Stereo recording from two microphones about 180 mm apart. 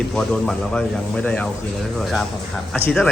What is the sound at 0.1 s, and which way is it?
A man's voice, 5° left (ahead or behind).